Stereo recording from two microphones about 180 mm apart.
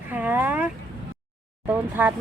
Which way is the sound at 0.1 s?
10° right (ahead or behind).